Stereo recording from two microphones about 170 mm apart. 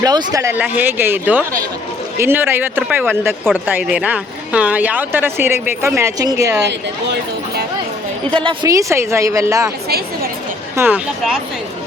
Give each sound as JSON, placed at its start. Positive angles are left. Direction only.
{"t": 0.0, "sound": "speech", "side_deg": -25}
{"t": 6.6, "sound": "speech", "side_deg": -85}
{"t": 8.4, "sound": "speech", "side_deg": -25}
{"t": 10.8, "sound": "speech", "side_deg": -10}